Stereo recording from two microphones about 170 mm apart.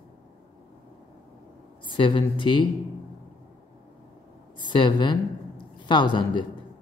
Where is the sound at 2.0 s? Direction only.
30° left (ahead or behind).